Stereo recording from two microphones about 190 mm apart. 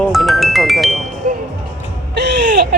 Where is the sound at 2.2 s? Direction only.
60° right (ahead or behind).